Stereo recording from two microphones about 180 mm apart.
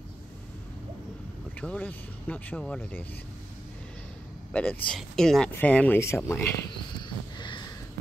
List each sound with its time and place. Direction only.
1.6 s speech: 10° left (ahead or behind)
4.5 s speech: 5° left (ahead or behind)
7.0 s a sound: 25° left (ahead or behind)